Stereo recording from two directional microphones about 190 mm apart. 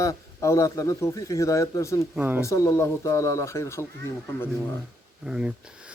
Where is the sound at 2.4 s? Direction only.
15° left (ahead or behind).